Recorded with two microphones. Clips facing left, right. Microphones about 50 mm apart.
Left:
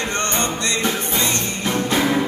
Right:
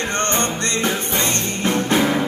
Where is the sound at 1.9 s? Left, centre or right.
Centre.